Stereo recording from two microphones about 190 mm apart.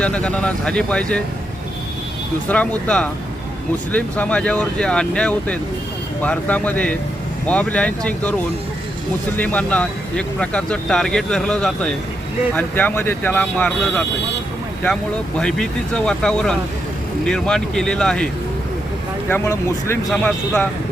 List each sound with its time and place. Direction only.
0.0 s speech: 5° left (ahead or behind)
2.5 s speech: 5° left (ahead or behind)
9.4 s speech: 10° left (ahead or behind)
15.4 s speech: 5° left (ahead or behind)
19.3 s speech: 10° left (ahead or behind)